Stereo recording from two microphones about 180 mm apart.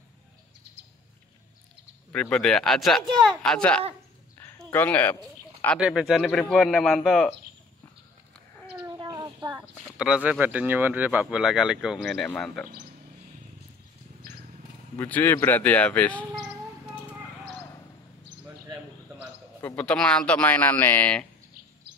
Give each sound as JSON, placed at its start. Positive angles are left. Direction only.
{"t": 2.1, "sound": "speech", "side_deg": 5}
{"t": 4.4, "sound": "a sound", "side_deg": 15}
{"t": 5.8, "sound": "speech", "side_deg": -5}
{"t": 8.8, "sound": "a sound", "side_deg": -25}
{"t": 9.5, "sound": "speech", "side_deg": -5}
{"t": 15.0, "sound": "speech", "side_deg": 10}
{"t": 19.6, "sound": "speech", "side_deg": 5}